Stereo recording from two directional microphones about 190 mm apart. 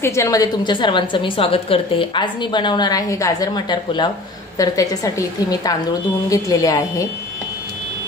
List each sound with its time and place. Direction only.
0.0 s a woman's voice: 15° left (ahead or behind)